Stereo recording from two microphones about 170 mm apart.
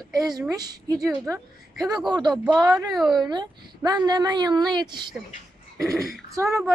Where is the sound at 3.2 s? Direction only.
25° right (ahead or behind).